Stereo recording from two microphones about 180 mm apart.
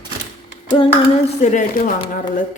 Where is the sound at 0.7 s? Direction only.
30° left (ahead or behind).